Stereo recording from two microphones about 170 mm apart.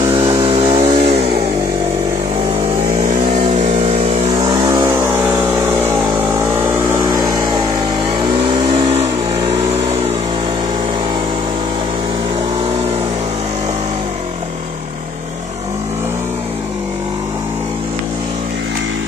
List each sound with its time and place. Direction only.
0.2 s chainsaw: 35° right (ahead or behind)
3.6 s vehicle: 40° right (ahead or behind)
4.4 s vehicle: 25° right (ahead or behind)